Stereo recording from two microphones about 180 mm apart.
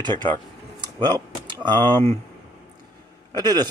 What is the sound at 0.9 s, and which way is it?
Speech, 25° right (ahead or behind).